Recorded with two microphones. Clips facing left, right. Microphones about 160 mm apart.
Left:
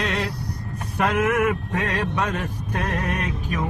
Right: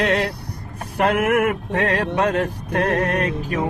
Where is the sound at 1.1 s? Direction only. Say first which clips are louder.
Right 2 dB; 60° right (ahead or behind).